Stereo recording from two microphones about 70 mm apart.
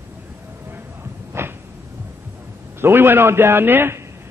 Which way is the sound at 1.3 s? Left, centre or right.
Right.